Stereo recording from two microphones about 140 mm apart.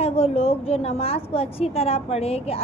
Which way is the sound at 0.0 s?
45° left (ahead or behind).